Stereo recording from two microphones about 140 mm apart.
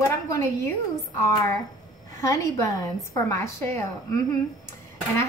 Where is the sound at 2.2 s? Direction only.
20° left (ahead or behind).